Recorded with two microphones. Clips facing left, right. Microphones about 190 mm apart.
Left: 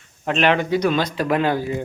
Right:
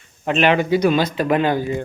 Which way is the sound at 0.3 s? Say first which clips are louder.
Right 2 dB; 5° right (ahead or behind).